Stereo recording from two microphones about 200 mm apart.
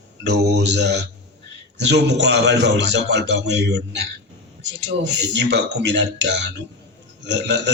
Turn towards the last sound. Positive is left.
turn(degrees=-60)  # may be behind; listen again after turning